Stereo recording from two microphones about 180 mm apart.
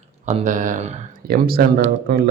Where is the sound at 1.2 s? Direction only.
55° right (ahead or behind).